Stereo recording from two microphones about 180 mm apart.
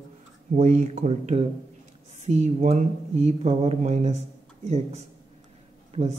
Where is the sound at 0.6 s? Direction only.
45° right (ahead or behind).